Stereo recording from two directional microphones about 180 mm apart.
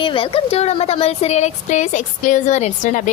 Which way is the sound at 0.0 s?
30° left (ahead or behind).